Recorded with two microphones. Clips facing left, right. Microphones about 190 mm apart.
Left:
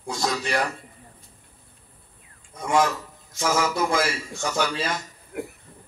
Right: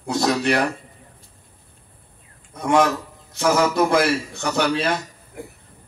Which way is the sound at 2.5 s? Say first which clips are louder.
Right 4 dB; 65° right (ahead or behind).